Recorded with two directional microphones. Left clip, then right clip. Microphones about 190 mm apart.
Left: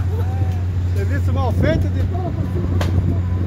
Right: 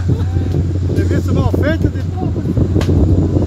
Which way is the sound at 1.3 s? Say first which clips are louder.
Right 2 dB; 45° right (ahead or behind).